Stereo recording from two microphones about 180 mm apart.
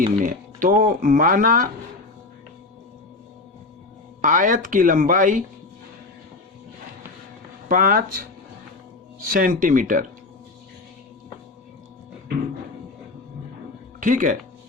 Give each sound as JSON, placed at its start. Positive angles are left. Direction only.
{"t": 0.0, "sound": "speech", "side_deg": -50}
{"t": 4.2, "sound": "speech", "side_deg": -45}
{"t": 7.7, "sound": "speech", "side_deg": -50}
{"t": 9.3, "sound": "speech", "side_deg": -50}
{"t": 14.0, "sound": "speech", "side_deg": -45}